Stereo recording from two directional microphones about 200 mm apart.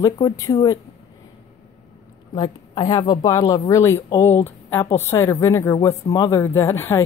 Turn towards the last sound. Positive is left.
turn(degrees=10)  # may be behind; listen again after turning